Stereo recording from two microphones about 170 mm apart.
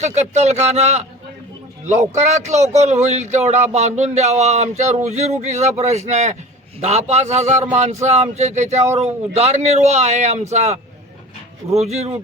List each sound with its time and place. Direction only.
0.2 s speech: 40° right (ahead or behind)